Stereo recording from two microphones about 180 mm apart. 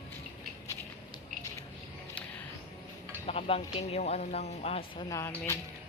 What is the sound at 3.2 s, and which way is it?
Speech, 35° left (ahead or behind).